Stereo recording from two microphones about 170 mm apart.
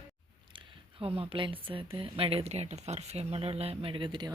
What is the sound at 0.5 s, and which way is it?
Speech, 30° right (ahead or behind).